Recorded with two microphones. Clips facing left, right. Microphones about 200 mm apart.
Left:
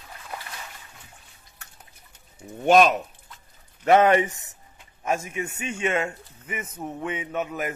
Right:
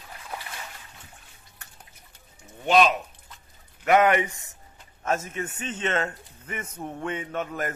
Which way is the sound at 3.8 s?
30° left (ahead or behind).